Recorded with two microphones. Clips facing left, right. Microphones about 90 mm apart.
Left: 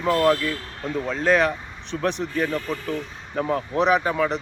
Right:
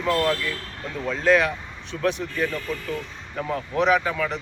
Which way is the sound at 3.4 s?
40° left (ahead or behind).